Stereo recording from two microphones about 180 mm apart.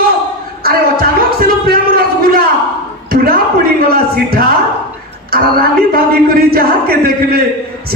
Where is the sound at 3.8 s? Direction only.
55° right (ahead or behind).